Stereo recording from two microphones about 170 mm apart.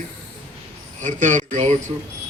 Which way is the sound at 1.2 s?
45° right (ahead or behind).